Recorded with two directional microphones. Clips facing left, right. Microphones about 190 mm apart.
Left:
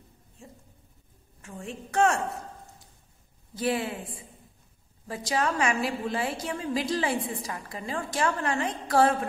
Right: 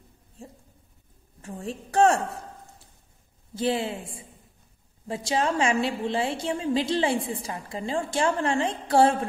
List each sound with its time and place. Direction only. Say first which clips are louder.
0.4 s a sound: right 4 dB; 35° right (ahead or behind)
1.4 s a woman's voice: right 4 dB; 35° right (ahead or behind)
3.5 s a woman's voice: right 2 dB; 25° right (ahead or behind)